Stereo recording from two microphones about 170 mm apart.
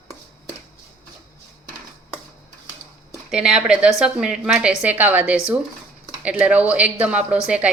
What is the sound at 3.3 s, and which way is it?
A woman's voice, 5° right (ahead or behind).